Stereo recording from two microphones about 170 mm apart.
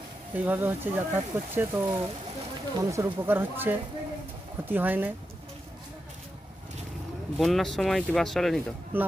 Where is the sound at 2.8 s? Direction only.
20° right (ahead or behind).